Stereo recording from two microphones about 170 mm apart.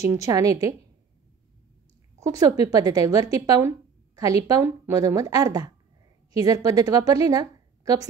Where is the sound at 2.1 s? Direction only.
20° right (ahead or behind).